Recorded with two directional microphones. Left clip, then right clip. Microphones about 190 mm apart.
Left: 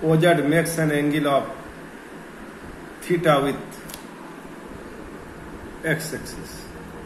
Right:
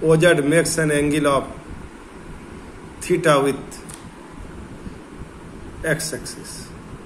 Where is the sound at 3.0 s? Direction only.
40° right (ahead or behind).